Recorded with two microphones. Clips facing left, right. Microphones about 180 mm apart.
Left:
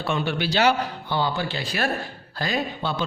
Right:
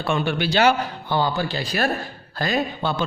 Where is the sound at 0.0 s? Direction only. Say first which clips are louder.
Right 2 dB; 55° right (ahead or behind).